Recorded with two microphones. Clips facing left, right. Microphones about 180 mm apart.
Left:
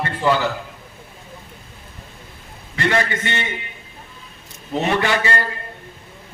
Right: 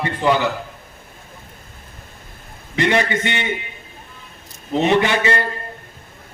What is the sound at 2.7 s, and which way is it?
Speech, 20° right (ahead or behind).